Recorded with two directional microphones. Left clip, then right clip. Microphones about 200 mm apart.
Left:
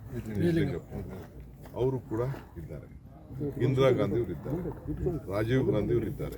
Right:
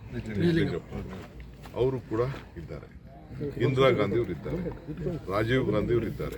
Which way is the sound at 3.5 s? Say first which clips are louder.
Right 2 dB; 5° left (ahead or behind).